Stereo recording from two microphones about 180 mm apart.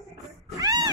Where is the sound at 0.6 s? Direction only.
20° right (ahead or behind).